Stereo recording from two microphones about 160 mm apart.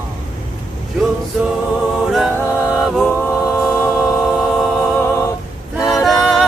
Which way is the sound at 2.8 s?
Centre (ahead or behind).